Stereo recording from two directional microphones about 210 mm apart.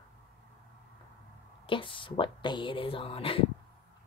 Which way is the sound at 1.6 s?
25° left (ahead or behind).